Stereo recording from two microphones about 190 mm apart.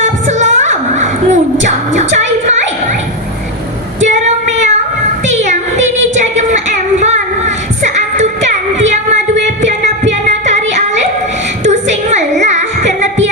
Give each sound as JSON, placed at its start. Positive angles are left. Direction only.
{"t": 0.0, "sound": "music", "side_deg": -40}
{"t": 4.0, "sound": "female singing", "side_deg": -40}
{"t": 9.6, "sound": "music", "side_deg": -40}
{"t": 11.6, "sound": "child singing", "side_deg": -40}